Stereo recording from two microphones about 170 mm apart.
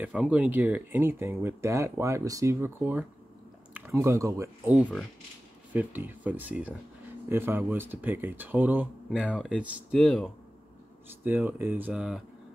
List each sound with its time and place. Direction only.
0.0 s speech: 5° right (ahead or behind)
4.7 s speech: 5° right (ahead or behind)
11.2 s speech: 10° right (ahead or behind)